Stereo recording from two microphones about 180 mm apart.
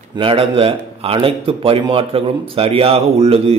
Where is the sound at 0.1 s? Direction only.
30° right (ahead or behind).